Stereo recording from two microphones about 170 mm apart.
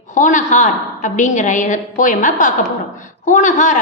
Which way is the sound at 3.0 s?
50° left (ahead or behind).